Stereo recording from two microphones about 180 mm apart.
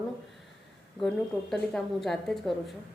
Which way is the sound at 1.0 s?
5° left (ahead or behind).